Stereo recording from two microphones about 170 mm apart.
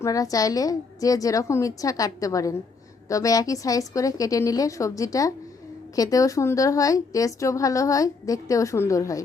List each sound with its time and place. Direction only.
0.0 s a woman's voice: 20° left (ahead or behind)